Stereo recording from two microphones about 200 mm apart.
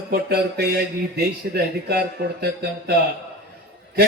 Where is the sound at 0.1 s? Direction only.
50° right (ahead or behind).